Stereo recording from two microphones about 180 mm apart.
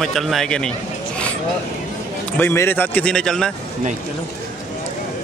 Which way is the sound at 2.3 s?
15° left (ahead or behind).